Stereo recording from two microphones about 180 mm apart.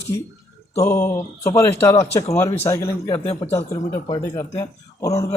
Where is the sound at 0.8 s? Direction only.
15° left (ahead or behind).